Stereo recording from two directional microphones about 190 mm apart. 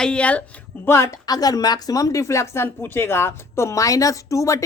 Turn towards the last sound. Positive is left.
turn(degrees=15)  # may be behind; listen again after turning